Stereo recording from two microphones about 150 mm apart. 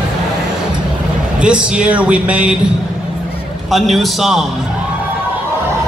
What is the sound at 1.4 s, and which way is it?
Speech, 5° right (ahead or behind).